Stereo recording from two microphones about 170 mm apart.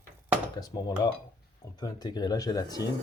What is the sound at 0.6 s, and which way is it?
Speech, 20° left (ahead or behind).